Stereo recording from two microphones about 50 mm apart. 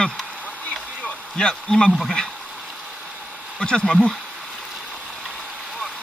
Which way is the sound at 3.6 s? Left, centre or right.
Centre.